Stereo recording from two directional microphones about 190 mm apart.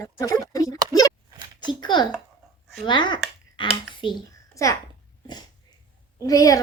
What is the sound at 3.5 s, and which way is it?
Finger snapping, 25° left (ahead or behind).